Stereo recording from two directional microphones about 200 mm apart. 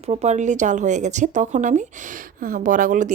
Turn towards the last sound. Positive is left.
turn(degrees=-40)  # may be behind; listen again after turning